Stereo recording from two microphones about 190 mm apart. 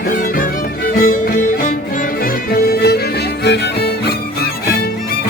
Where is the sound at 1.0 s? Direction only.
45° left (ahead or behind).